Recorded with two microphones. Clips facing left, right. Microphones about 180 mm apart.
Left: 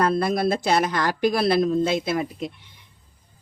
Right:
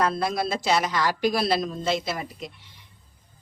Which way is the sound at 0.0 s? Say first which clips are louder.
Left 4 dB; 55° left (ahead or behind).